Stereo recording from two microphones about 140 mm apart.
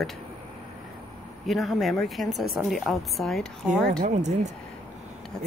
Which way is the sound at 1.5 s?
Centre (ahead or behind).